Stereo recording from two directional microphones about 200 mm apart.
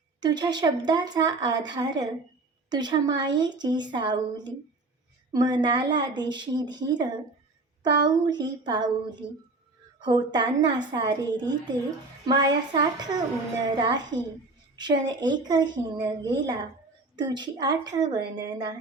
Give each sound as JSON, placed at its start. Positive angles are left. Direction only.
{"t": 0.2, "sound": "a woman's voice", "side_deg": -20}